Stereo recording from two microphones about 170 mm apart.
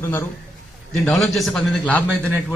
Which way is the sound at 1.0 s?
Centre (ahead or behind).